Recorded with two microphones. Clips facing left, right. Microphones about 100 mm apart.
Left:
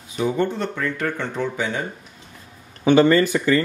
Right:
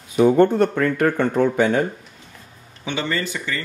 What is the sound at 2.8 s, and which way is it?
Speech, 45° left (ahead or behind).